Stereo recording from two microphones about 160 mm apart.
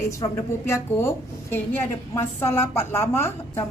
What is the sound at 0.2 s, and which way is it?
A woman's voice, 15° left (ahead or behind).